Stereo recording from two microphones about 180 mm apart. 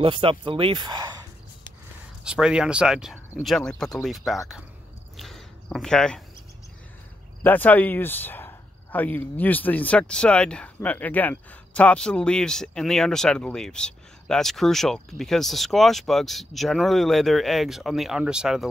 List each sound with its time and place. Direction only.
0.0 s speech: 30° right (ahead or behind)
2.2 s speech: 5° right (ahead or behind)
5.1 s a sound: centre (ahead or behind)
7.4 s speech: 10° left (ahead or behind)